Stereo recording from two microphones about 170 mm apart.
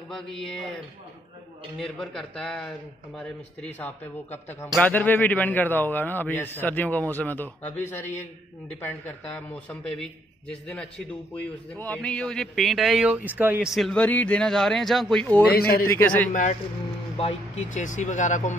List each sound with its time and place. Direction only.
0.1 s a man's voice: 5° left (ahead or behind)
1.8 s a man's voice: 5° left (ahead or behind)
9.7 s a man's voice: 5° left (ahead or behind)
15.5 s a man's voice: 60° left (ahead or behind)
15.9 s a man's voice: 10° left (ahead or behind)
16.3 s speech: 45° left (ahead or behind)